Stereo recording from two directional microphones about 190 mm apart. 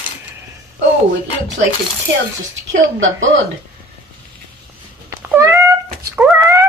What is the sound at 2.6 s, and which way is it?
Speech, 80° right.